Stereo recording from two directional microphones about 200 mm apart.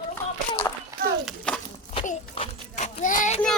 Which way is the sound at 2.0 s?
35° left (ahead or behind).